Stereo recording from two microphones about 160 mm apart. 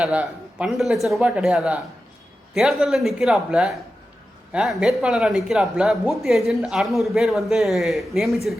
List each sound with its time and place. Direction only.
0.0 s speech: 5° right (ahead or behind)